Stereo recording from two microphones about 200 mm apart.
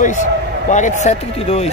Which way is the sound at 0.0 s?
40° left (ahead or behind).